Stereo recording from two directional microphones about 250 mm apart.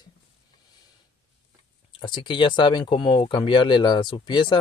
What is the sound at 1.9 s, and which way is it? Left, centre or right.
Speech, centre.